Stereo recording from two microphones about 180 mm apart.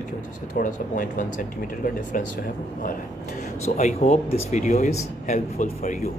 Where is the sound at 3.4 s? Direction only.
40° left (ahead or behind).